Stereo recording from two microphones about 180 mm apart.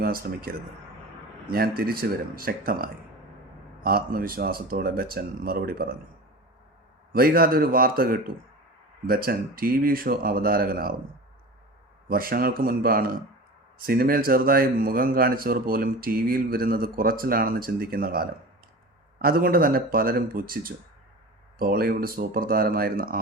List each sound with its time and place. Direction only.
0.0 s speech: 55° right (ahead or behind)
7.1 s speech: 55° right (ahead or behind)
12.0 s a man's voice: 55° right (ahead or behind)